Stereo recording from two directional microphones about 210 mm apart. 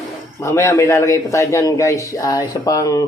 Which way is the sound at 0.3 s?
15° left (ahead or behind).